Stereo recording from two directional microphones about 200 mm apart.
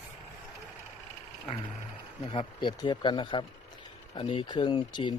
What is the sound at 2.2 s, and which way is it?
Speech, 25° left (ahead or behind).